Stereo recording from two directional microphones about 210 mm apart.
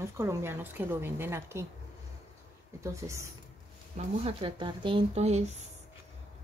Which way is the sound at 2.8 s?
15° right (ahead or behind).